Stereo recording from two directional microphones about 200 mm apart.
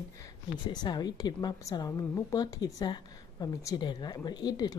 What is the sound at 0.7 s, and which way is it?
A woman's voice, 20° left (ahead or behind).